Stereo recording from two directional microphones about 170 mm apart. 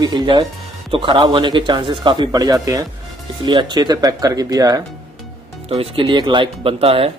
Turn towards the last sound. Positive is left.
turn(degrees=-35)  # may be behind; listen again after turning